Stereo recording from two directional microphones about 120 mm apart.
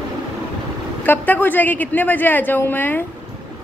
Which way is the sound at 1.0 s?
15° left (ahead or behind).